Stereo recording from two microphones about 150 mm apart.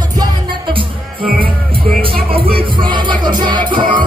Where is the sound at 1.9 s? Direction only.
80° right.